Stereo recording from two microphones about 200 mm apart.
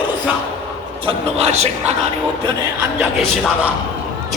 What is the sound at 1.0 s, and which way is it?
Speech, 30° right (ahead or behind).